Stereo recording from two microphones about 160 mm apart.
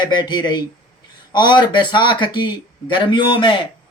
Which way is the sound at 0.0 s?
25° left (ahead or behind).